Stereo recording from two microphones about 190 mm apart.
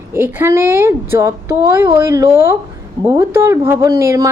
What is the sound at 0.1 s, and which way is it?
A woman's voice, 10° right (ahead or behind).